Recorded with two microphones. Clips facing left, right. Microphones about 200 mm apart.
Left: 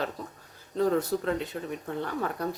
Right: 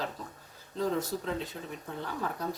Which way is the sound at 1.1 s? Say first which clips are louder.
Left 6 dB; 70° left (ahead or behind).